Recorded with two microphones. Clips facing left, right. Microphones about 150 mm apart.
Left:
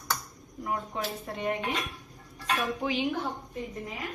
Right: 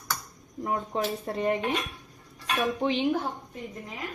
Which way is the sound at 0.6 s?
35° right (ahead or behind).